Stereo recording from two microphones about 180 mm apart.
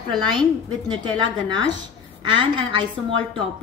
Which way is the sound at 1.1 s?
25° right (ahead or behind).